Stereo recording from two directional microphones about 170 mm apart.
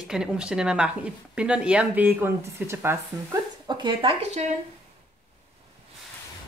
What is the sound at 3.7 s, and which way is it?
Speech, 25° right (ahead or behind).